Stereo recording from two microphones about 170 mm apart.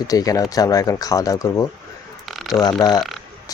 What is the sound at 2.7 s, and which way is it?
Speech, 20° left (ahead or behind).